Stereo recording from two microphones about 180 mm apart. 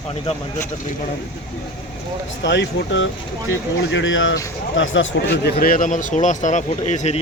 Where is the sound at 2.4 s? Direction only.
90° left.